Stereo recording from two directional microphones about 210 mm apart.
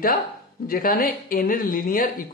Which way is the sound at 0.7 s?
45° left (ahead or behind).